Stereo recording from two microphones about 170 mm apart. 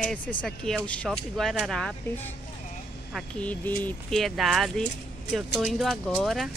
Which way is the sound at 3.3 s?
10° left (ahead or behind).